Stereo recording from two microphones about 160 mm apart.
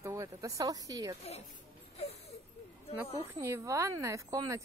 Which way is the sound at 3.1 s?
20° right (ahead or behind).